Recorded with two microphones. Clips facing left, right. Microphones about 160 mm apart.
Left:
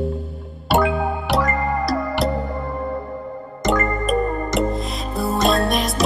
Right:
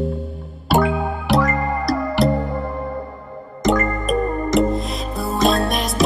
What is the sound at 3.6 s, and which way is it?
Music, centre (ahead or behind).